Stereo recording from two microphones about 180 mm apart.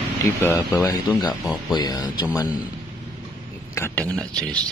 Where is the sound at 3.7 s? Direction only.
10° left (ahead or behind).